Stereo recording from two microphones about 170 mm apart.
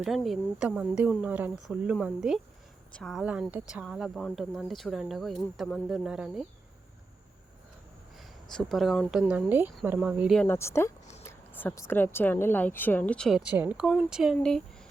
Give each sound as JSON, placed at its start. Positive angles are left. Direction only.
{"t": 0.0, "sound": "speech", "side_deg": 0}
{"t": 8.2, "sound": "speech", "side_deg": 0}
{"t": 10.3, "sound": "speech", "side_deg": 15}